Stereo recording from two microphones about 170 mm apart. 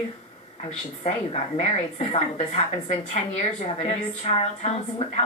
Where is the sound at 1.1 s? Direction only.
40° left (ahead or behind).